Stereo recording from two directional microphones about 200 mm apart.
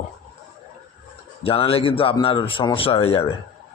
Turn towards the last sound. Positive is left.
turn(degrees=30)  # may be behind; listen again after turning